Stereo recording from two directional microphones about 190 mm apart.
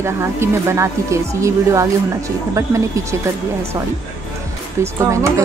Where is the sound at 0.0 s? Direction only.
15° right (ahead or behind).